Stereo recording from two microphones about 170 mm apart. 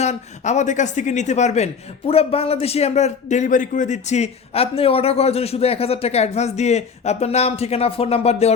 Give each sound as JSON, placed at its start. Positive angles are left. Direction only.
{"t": 0.0, "sound": "speech", "side_deg": 40}